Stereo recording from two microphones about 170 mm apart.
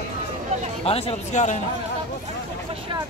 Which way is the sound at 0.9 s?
35° left (ahead or behind).